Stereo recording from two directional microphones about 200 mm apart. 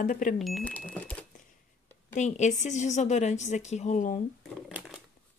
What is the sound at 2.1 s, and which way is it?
A woman's voice, 35° left (ahead or behind).